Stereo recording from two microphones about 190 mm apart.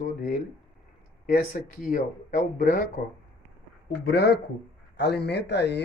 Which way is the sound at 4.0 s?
60° left (ahead or behind).